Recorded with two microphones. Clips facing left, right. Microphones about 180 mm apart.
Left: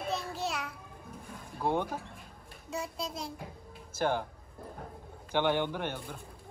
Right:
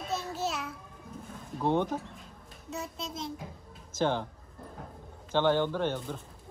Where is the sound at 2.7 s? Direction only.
Centre (ahead or behind).